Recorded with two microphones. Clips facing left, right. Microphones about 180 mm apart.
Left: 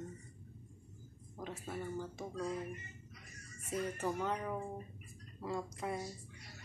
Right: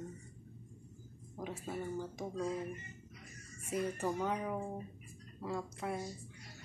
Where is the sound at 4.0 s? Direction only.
10° right (ahead or behind).